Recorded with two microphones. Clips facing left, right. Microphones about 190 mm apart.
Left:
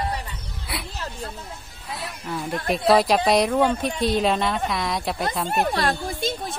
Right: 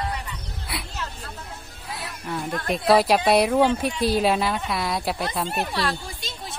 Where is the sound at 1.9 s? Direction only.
Centre (ahead or behind).